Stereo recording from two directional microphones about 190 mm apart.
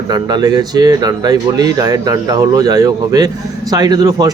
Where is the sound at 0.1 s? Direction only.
20° right (ahead or behind).